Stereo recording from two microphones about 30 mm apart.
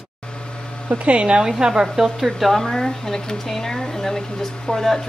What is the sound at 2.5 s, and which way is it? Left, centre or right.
Speech, centre.